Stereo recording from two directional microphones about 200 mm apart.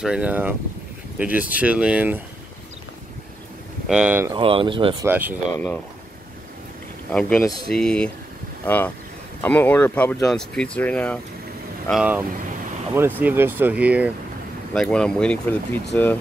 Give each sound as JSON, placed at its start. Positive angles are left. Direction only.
{"t": 0.0, "sound": "speech", "side_deg": -5}
{"t": 3.8, "sound": "speech", "side_deg": -5}
{"t": 4.3, "sound": "speech", "side_deg": -25}
{"t": 5.0, "sound": "speech", "side_deg": -10}
{"t": 7.1, "sound": "speech", "side_deg": 5}
{"t": 11.9, "sound": "speech", "side_deg": -5}
{"t": 14.7, "sound": "speech", "side_deg": 5}